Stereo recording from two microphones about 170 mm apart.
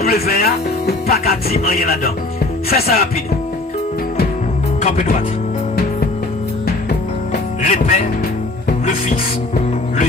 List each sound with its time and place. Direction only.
0.0 s speech: 60° left (ahead or behind)
4.8 s music: 40° left (ahead or behind)
7.6 s music: 50° left (ahead or behind)